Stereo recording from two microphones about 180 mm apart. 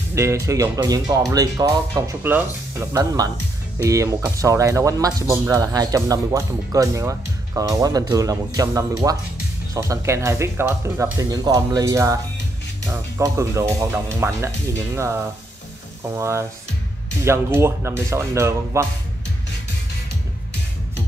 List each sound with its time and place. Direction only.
0.1 s speech: 15° right (ahead or behind)